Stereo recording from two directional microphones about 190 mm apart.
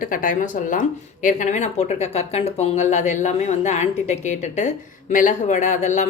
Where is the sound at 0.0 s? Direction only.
45° left (ahead or behind).